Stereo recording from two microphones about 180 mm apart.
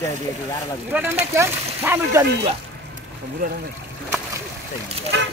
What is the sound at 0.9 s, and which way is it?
Speech, 10° right (ahead or behind).